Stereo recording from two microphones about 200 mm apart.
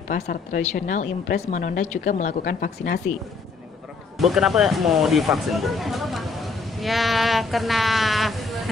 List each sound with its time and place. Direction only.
0.1 s speech: 45° left (ahead or behind)
4.2 s speech: centre (ahead or behind)